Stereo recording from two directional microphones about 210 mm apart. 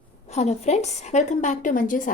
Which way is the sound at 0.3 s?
30° left (ahead or behind).